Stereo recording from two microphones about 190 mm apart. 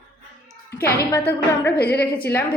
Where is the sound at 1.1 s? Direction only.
10° left (ahead or behind).